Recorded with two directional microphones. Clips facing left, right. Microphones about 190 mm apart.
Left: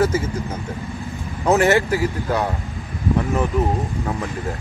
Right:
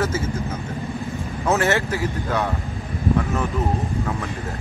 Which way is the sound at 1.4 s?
15° left (ahead or behind).